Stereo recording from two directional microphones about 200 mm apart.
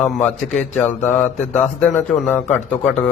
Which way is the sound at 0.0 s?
10° left (ahead or behind).